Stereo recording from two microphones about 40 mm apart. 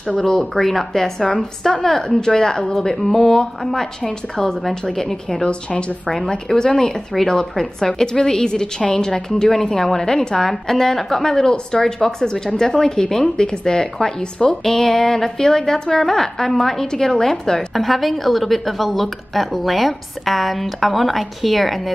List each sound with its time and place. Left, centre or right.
0.2 s speech: centre
5.4 s a woman's voice: left
6.0 s speech: centre
9.3 s a woman's voice: centre